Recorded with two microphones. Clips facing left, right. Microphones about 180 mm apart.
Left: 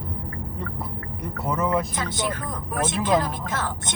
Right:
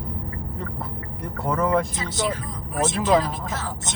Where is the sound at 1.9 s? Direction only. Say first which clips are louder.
Right 1 dB; 55° left (ahead or behind).